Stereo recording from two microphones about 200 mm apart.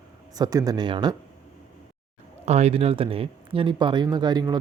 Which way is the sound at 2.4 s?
35° right (ahead or behind).